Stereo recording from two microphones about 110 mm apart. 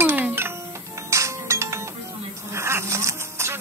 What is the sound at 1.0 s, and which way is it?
Music, 25° right (ahead or behind).